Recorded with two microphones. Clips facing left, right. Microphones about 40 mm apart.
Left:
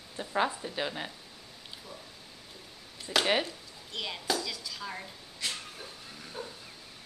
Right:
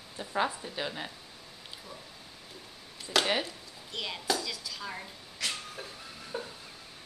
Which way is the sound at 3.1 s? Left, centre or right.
Centre.